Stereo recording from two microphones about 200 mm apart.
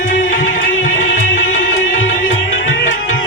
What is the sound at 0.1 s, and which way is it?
Music, 40° left (ahead or behind).